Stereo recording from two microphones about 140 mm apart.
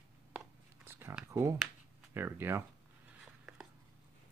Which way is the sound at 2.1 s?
15° right (ahead or behind).